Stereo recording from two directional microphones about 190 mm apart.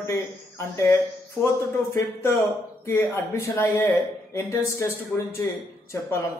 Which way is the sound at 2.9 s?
15° left (ahead or behind).